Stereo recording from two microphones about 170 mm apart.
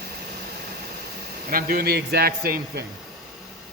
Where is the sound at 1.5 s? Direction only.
65° right (ahead or behind).